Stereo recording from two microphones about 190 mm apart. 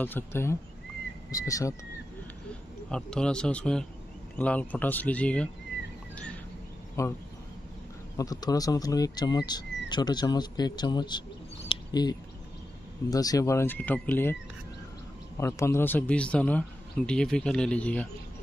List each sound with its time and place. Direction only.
0.0 s speech: 10° left (ahead or behind)
2.9 s a man's voice: 5° left (ahead or behind)
7.0 s speech: 15° left (ahead or behind)
8.2 s speech: 20° left (ahead or behind)
11.7 s a sound: 20° left (ahead or behind)
13.1 s speech: 20° left (ahead or behind)
15.3 s speech: 15° left (ahead or behind)